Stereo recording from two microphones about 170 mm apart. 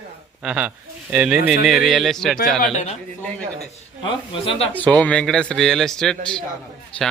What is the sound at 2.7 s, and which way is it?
Speech, 40° left (ahead or behind).